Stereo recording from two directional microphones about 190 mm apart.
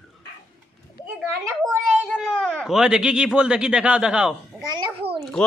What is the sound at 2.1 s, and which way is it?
Speech, 5° right (ahead or behind).